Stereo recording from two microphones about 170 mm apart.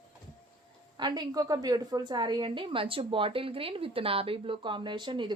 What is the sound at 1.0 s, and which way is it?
A woman's voice, 25° right (ahead or behind).